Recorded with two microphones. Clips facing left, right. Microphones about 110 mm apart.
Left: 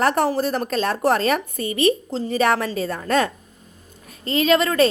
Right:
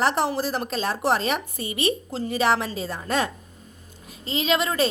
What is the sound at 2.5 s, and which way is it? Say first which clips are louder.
Speech: left 3 dB; 50° left (ahead or behind).